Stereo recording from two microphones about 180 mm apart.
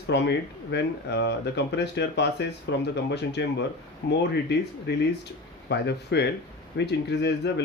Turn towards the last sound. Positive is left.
turn(degrees=70)  # may be behind; listen again after turning